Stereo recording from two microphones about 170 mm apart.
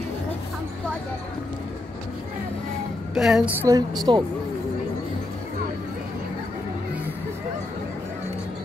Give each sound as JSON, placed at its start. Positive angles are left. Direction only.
{"t": 3.2, "sound": "a woman's voice", "side_deg": 0}
{"t": 3.6, "sound": "a woman's voice", "side_deg": -20}